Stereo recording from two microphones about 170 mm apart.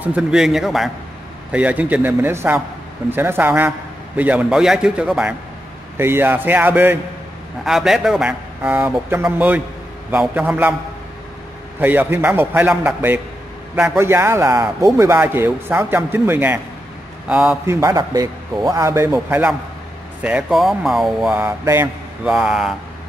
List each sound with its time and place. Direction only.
0.0 s a man's voice: 5° right (ahead or behind)
11.8 s a man's voice: 10° right (ahead or behind)
17.6 s a man's voice: 15° right (ahead or behind); by 21.4 s centre (ahead or behind)
21.4 s a man's voice: 15° right (ahead or behind)
22.3 s a man's voice: centre (ahead or behind)